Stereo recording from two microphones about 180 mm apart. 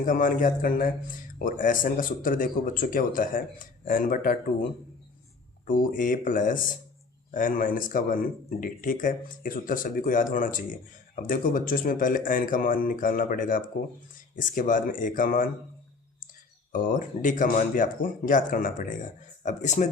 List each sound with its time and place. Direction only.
0.0 s speech: 50° left (ahead or behind)
5.6 s speech: 50° left (ahead or behind)
16.7 s speech: 50° left (ahead or behind)